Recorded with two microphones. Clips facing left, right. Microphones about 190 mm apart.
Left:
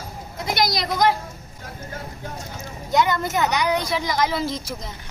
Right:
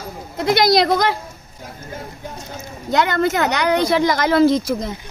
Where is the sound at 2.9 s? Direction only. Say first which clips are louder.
Right 4 dB; 75° right (ahead or behind).